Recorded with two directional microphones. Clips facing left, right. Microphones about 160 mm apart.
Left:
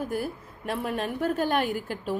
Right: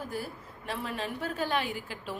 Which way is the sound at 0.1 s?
55° left (ahead or behind).